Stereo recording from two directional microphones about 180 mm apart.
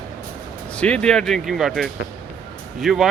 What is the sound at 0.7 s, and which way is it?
Speech, 5° left (ahead or behind).